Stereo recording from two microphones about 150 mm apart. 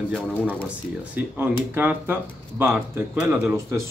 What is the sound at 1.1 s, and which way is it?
Speech, 10° right (ahead or behind).